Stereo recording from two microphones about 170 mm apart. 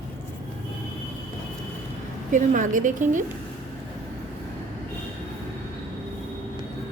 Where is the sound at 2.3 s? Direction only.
50° right (ahead or behind).